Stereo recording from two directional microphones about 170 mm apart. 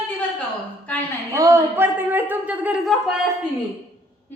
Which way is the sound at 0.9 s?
10° left (ahead or behind).